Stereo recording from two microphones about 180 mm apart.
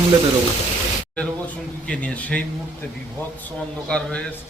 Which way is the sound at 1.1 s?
5° left (ahead or behind).